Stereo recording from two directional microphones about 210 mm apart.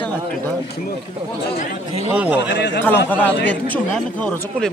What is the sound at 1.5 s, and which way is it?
Speech, 40° left (ahead or behind).